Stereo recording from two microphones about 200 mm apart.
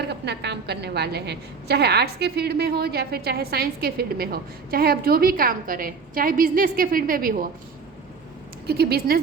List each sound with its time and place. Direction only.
0.1 s a woman's voice: 60° right (ahead or behind)
8.6 s a woman's voice: 50° right (ahead or behind)